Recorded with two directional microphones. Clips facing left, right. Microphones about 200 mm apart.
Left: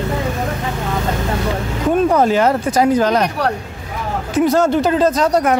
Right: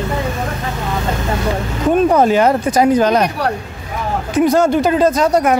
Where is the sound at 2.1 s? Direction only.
15° right (ahead or behind).